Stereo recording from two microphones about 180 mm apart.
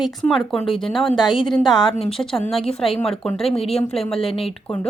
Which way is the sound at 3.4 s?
35° left (ahead or behind).